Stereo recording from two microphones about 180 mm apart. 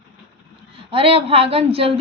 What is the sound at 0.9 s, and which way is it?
A woman's voice, 30° right (ahead or behind).